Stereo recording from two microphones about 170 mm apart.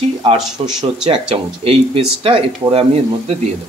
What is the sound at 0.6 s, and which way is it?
Speech, 35° right (ahead or behind).